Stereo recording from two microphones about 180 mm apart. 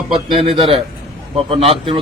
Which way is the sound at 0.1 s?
30° right (ahead or behind).